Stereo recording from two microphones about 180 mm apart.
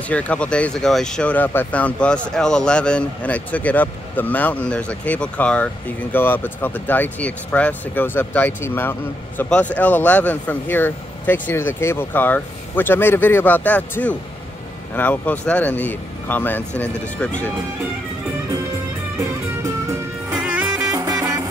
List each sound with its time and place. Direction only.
0.1 s speech: 5° left (ahead or behind)
20.2 s music: 5° right (ahead or behind)
20.9 s music: 20° right (ahead or behind)